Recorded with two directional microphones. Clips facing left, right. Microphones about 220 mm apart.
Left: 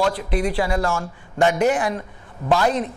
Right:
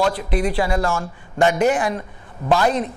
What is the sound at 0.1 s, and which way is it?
A man's voice, 15° right (ahead or behind).